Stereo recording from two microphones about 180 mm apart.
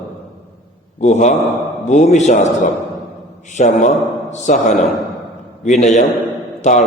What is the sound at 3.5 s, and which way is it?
A man's voice, 45° left (ahead or behind).